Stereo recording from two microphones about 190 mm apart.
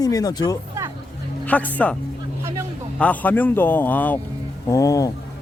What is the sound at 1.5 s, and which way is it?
Speech, 10° left (ahead or behind).